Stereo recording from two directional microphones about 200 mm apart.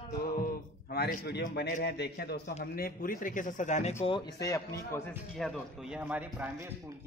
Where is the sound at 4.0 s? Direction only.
25° left (ahead or behind).